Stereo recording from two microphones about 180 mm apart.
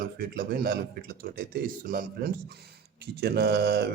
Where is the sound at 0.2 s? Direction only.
55° right (ahead or behind).